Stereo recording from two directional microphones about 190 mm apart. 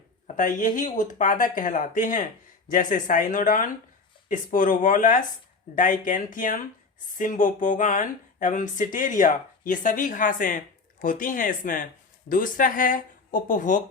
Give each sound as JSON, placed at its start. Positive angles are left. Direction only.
{"t": 0.3, "sound": "speech", "side_deg": 45}